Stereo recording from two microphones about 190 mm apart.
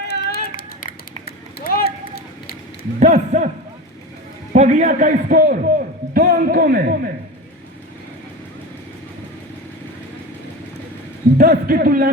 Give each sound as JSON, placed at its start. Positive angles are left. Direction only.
{"t": 0.0, "sound": "run", "side_deg": 60}
{"t": 3.0, "sound": "a man's voice", "side_deg": -40}
{"t": 4.5, "sound": "a man's voice", "side_deg": -40}
{"t": 11.3, "sound": "speech", "side_deg": -50}